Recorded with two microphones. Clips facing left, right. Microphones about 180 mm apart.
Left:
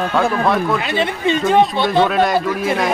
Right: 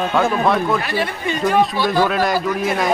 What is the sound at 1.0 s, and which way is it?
Speech, 25° left (ahead or behind).